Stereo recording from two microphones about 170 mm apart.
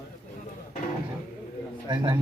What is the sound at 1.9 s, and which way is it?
Speech, 25° right (ahead or behind).